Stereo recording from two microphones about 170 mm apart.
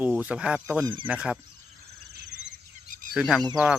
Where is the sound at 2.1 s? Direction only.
80° right.